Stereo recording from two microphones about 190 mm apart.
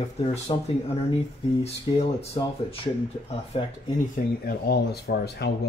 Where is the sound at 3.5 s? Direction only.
30° left (ahead or behind).